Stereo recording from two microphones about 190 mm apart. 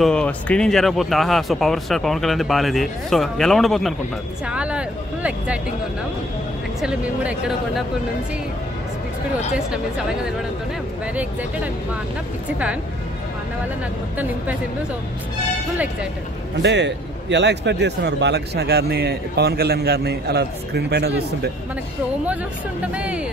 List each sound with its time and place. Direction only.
0.0 s speech: 5° left (ahead or behind)
6.8 s speech: 5° right (ahead or behind)
16.6 s a man's voice: 65° right (ahead or behind)
22.9 s speech: 5° right (ahead or behind)